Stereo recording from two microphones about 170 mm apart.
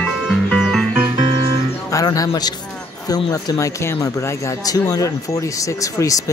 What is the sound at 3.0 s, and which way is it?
Speech, 20° left (ahead or behind).